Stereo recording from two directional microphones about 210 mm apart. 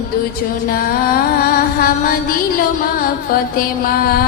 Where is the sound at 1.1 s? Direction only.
45° left (ahead or behind).